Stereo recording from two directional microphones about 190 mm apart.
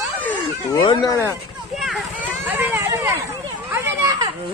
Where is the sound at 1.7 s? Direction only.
Centre (ahead or behind).